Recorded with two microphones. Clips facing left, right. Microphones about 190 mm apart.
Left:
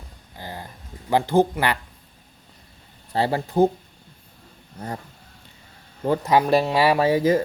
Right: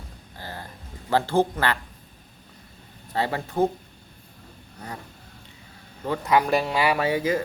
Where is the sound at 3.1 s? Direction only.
30° left (ahead or behind).